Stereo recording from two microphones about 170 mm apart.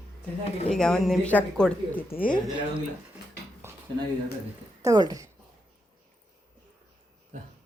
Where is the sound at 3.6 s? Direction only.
15° right (ahead or behind).